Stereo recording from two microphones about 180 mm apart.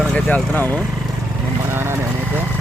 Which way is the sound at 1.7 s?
15° right (ahead or behind).